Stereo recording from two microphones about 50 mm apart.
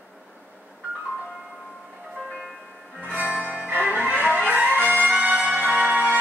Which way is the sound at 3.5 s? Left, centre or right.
Right.